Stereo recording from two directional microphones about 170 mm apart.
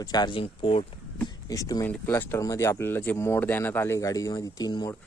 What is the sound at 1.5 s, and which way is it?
Speech, 20° left (ahead or behind).